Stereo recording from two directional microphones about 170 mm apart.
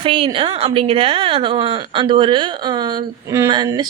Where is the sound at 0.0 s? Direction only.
30° right (ahead or behind).